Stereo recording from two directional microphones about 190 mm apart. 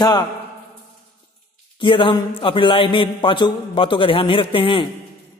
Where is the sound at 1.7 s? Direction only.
25° left (ahead or behind).